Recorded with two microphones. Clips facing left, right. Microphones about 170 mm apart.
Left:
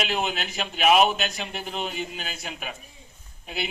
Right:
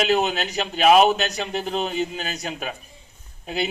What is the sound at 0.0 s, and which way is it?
Speech, 40° right (ahead or behind).